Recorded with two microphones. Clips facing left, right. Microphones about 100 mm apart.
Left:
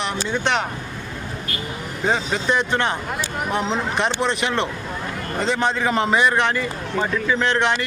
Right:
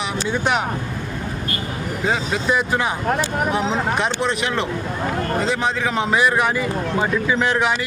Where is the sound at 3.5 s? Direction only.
Centre (ahead or behind).